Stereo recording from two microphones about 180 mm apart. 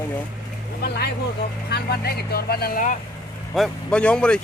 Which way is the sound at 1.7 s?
60° left (ahead or behind).